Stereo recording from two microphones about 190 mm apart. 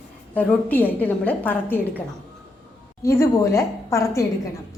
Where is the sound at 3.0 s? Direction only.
15° left (ahead or behind).